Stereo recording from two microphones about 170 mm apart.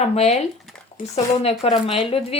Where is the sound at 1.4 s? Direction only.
35° left (ahead or behind).